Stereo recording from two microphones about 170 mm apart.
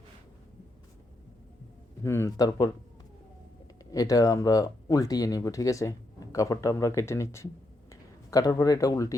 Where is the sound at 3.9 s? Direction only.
20° left (ahead or behind).